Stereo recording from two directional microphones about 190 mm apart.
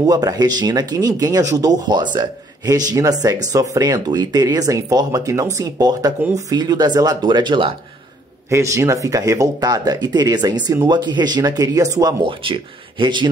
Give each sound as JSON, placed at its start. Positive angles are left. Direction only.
{"t": 0.0, "sound": "speech", "side_deg": -20}